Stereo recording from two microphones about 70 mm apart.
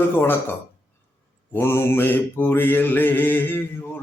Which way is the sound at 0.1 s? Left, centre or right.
Left.